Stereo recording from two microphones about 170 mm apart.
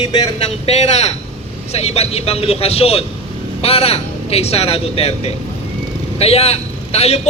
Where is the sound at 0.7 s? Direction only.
40° left (ahead or behind).